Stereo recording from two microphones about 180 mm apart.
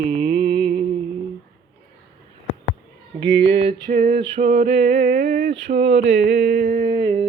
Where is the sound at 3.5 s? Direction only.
35° right (ahead or behind).